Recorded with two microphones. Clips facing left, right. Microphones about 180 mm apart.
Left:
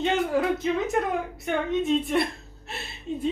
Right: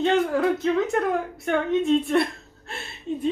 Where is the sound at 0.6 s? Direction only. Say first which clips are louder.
Right 3 dB; 15° left (ahead or behind).